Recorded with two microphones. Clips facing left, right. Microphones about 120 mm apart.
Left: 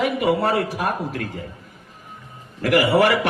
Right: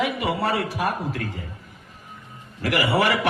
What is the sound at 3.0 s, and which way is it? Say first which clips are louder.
Speech: left 4 dB; 50° left (ahead or behind).